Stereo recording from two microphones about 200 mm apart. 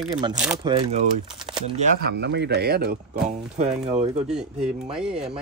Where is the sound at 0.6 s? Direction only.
30° right (ahead or behind).